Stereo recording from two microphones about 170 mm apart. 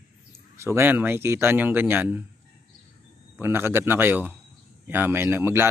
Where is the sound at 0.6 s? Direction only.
15° right (ahead or behind).